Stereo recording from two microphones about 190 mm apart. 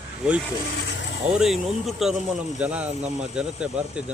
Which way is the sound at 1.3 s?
Centre (ahead or behind).